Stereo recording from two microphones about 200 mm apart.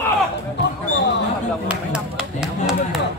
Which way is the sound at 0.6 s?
60° left (ahead or behind).